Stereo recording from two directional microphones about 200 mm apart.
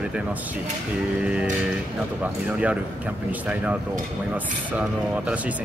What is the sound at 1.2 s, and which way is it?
Speech, 5° right (ahead or behind).